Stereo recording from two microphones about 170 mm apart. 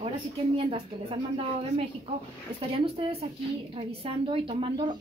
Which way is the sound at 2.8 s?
35° right (ahead or behind).